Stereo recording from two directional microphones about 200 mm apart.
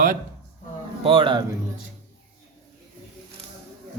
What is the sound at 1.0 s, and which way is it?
Speech, 25° right (ahead or behind).